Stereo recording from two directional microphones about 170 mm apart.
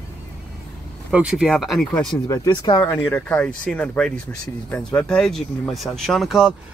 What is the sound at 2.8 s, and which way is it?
Speech, 10° left (ahead or behind).